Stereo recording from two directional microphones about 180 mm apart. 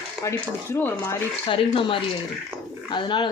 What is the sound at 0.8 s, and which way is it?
Speech, 10° left (ahead or behind).